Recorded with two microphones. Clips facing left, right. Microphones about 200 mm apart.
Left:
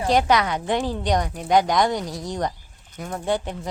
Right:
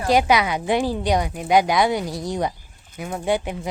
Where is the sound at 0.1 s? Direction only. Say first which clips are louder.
Right 2 dB; 10° right (ahead or behind).